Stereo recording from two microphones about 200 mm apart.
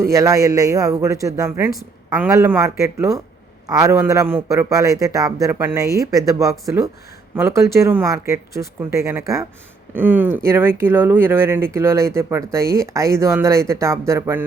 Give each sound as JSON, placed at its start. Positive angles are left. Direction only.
{"t": 0.0, "sound": "speech", "side_deg": -15}